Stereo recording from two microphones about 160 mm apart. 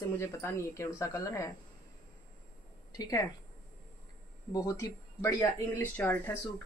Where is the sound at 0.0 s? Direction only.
15° left (ahead or behind).